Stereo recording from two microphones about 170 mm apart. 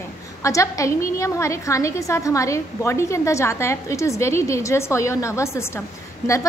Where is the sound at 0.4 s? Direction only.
20° left (ahead or behind).